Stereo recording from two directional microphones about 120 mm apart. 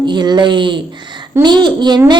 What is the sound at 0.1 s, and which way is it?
A woman's voice, 40° right (ahead or behind).